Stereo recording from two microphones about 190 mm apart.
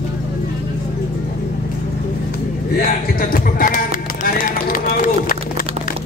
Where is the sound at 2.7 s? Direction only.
50° left (ahead or behind).